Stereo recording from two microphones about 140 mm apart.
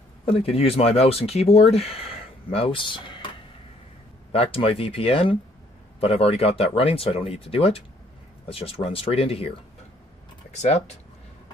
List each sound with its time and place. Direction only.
0.2 s speech: 40° left (ahead or behind)
4.3 s speech: 45° left (ahead or behind)
10.5 s speech: 55° left (ahead or behind)